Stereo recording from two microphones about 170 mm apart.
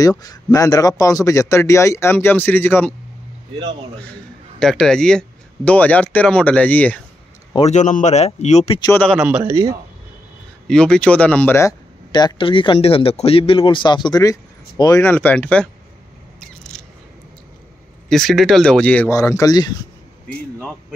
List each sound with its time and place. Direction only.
0.2 s a man's voice: 20° left (ahead or behind)
4.6 s a man's voice: 5° left (ahead or behind)
7.5 s speech: 40° left (ahead or behind)
8.9 s a man's voice: 5° left (ahead or behind)
9.2 s speech: 10° right (ahead or behind)
10.7 s speech: 5° left (ahead or behind); by 15.0 s 20° left (ahead or behind)
15.0 s a man's voice: 10° left (ahead or behind)
16.7 s a sound: 5° left (ahead or behind)
18.0 s a man's voice: centre (ahead or behind); by 19.8 s 25° left (ahead or behind)